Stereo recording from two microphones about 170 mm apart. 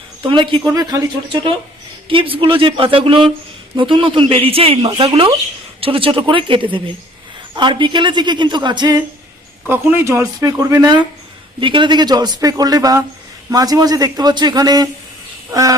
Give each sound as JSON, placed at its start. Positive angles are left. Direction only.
{"t": 0.2, "sound": "a woman's voice", "side_deg": -30}
{"t": 9.6, "sound": "speech", "side_deg": -10}